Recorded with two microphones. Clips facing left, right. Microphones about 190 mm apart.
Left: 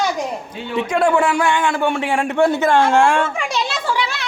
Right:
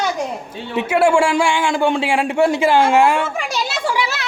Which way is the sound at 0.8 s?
5° right (ahead or behind).